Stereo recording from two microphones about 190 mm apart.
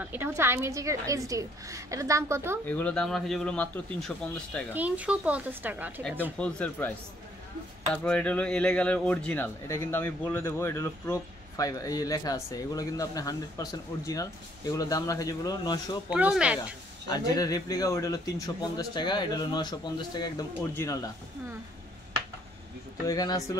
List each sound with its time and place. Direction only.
0.0 s a woman's voice: 10° right (ahead or behind)
2.6 s speech: 5° left (ahead or behind)
4.7 s a woman's voice: 10° right (ahead or behind)
6.3 s speech: 5° left (ahead or behind)
7.9 s speech: 5° left (ahead or behind); by 16.0 s 20° left (ahead or behind)
16.1 s a woman's voice: 5° right (ahead or behind)
17.1 s speech: 20° left (ahead or behind)
23.0 s speech: 20° left (ahead or behind)